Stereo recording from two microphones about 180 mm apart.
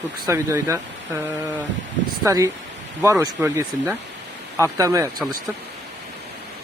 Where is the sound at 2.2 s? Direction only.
15° right (ahead or behind).